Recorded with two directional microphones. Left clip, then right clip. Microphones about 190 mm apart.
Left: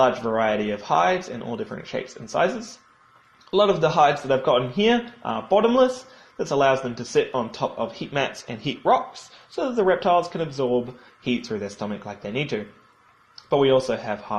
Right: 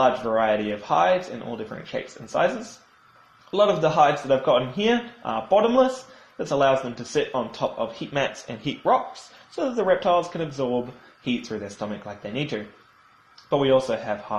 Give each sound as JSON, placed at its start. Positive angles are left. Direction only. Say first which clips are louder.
{"t": 0.0, "sound": "speech", "louder": "even", "side_deg": 35}